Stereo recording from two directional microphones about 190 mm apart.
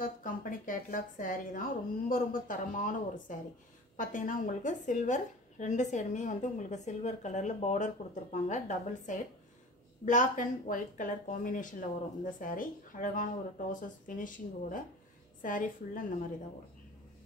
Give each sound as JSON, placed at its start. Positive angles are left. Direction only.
{"t": 0.0, "sound": "a woman's voice", "side_deg": 45}